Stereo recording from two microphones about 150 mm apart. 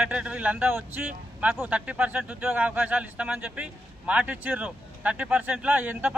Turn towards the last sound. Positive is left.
turn(degrees=-10)  # may be behind; listen again after turning